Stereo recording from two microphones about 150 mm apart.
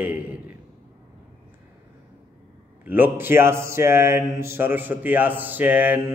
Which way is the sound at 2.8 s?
10° right (ahead or behind).